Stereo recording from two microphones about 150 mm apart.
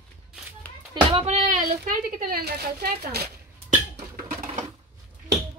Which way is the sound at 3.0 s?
90° right.